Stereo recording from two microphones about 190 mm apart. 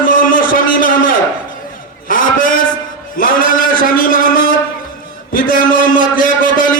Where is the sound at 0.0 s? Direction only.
45° left (ahead or behind).